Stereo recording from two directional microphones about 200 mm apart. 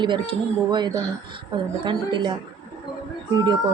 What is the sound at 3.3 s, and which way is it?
Speech, 20° right (ahead or behind).